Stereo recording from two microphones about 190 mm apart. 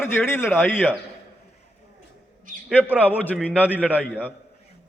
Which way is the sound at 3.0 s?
10° left (ahead or behind).